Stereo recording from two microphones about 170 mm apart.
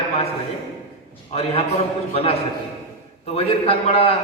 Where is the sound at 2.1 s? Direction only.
35° left (ahead or behind).